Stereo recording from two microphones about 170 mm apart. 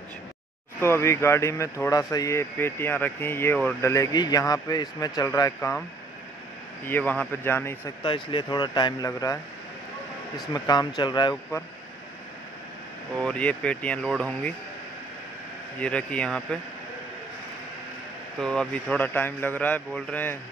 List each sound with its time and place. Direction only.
0.7 s speech: 15° left (ahead or behind)
3.9 s speech: 20° left (ahead or behind)
6.9 s speech: 10° left (ahead or behind)
8.0 s speech: 30° left (ahead or behind)
10.5 s speech: 25° left (ahead or behind)
13.2 s speech: 5° left (ahead or behind)
15.8 s speech: 5° left (ahead or behind)
18.4 s speech: 5° left (ahead or behind)